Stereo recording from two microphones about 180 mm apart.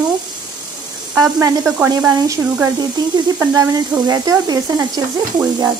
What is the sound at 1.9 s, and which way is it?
Speech, 20° right (ahead or behind).